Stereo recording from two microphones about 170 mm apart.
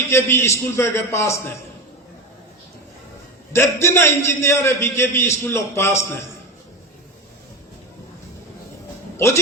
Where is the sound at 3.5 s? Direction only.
15° left (ahead or behind).